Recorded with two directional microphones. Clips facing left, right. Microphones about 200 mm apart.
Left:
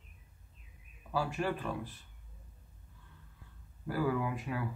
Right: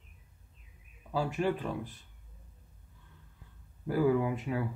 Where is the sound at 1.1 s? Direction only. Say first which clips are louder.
Right 3 dB; 20° right (ahead or behind).